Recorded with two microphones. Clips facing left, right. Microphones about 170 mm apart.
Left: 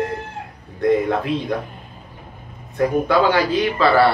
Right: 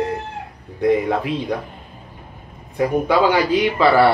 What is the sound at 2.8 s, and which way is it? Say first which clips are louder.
Speech: even; 15° right (ahead or behind).